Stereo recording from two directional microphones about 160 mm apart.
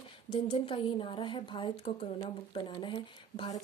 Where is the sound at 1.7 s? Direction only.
40° left (ahead or behind).